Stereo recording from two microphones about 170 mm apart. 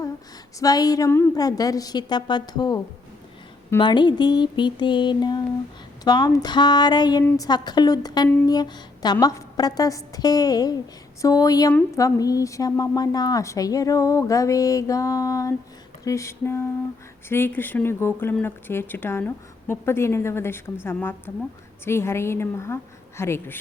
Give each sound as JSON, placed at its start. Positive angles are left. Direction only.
{"t": 0.6, "sound": "a woman's voice", "side_deg": 20}